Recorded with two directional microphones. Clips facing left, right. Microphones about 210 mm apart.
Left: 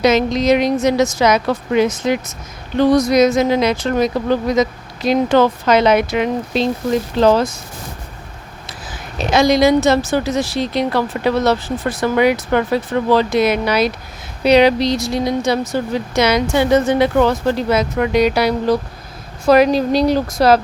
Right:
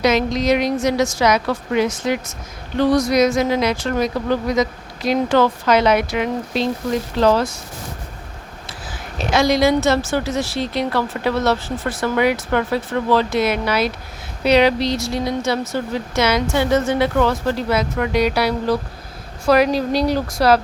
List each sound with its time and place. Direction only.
0.0 s speech: 25° left (ahead or behind)
8.6 s a woman's voice: 20° left (ahead or behind)